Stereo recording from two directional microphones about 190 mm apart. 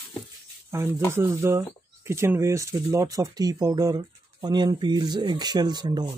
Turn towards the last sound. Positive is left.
turn(degrees=-20)  # may be behind; listen again after turning